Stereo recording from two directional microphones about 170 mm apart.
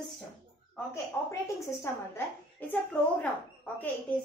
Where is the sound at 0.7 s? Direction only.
15° left (ahead or behind).